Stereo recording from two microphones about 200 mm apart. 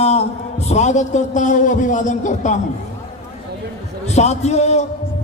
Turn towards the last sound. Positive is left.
turn(degrees=35)  # may be behind; listen again after turning